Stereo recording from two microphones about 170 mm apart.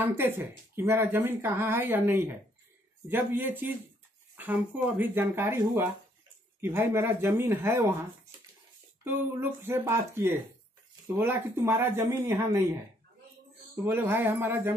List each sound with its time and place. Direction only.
0.0 s speech: 10° right (ahead or behind)
6.6 s speech: 15° right (ahead or behind)
9.0 s speech: 15° right (ahead or behind)
13.8 s speech: 15° right (ahead or behind)